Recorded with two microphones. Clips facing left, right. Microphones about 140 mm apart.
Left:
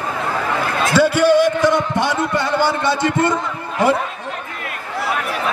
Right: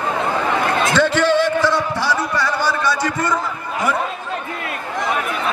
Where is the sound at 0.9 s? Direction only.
10° left (ahead or behind).